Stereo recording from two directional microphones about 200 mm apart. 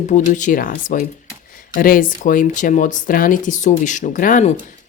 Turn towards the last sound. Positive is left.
turn(degrees=40)  # may be behind; listen again after turning